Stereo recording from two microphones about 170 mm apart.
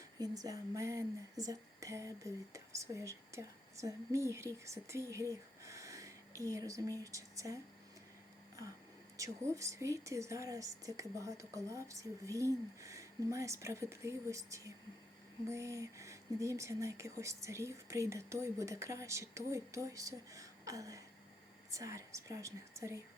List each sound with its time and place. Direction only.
0.2 s speech: 20° right (ahead or behind)
9.1 s speech: 20° right (ahead or behind)